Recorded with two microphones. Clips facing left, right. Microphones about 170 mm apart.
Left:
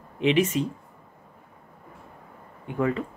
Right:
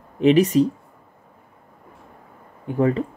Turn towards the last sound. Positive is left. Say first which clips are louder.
# right 6 dB
turn(degrees=-35)  # may be behind; listen again after turning